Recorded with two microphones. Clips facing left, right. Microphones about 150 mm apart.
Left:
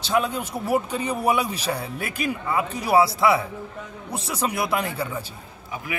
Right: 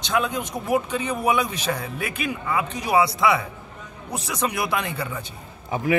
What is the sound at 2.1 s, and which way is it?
Speech, 35° left (ahead or behind).